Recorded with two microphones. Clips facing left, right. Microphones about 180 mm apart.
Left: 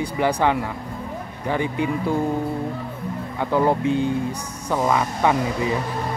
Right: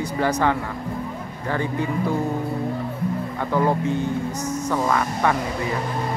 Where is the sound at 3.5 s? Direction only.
15° left (ahead or behind).